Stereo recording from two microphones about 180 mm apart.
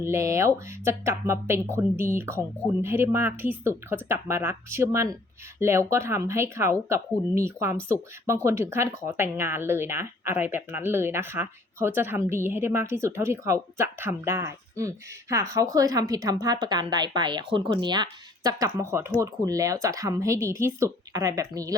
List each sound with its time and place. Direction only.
0.0 s speech: 15° right (ahead or behind)